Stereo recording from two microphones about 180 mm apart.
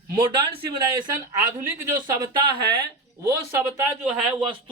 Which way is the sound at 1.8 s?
20° right (ahead or behind).